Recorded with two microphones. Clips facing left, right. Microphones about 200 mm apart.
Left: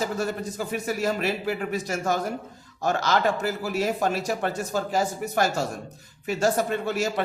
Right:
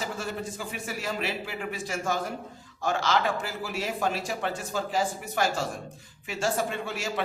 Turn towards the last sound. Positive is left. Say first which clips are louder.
# left 6 dB
turn(degrees=40)  # may be behind; listen again after turning